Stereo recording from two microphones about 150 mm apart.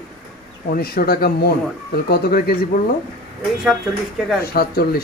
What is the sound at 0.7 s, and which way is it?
Speech, 85° left.